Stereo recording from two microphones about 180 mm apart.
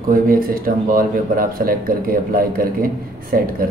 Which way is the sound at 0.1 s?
55° right (ahead or behind).